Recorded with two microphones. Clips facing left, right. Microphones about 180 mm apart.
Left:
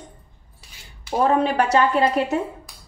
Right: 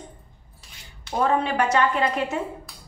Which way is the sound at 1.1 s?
35° left (ahead or behind).